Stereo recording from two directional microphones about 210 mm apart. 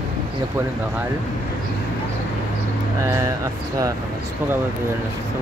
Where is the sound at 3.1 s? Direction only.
15° right (ahead or behind).